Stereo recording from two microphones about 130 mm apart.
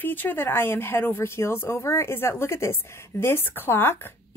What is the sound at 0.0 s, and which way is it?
A woman's voice, 15° left (ahead or behind).